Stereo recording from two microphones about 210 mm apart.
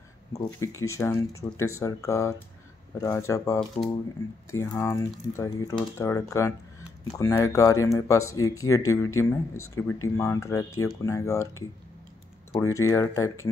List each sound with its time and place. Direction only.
0.3 s speech: 15° left (ahead or behind)